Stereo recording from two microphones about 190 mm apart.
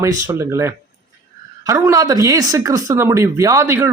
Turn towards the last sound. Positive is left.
turn(degrees=-15)  # may be behind; listen again after turning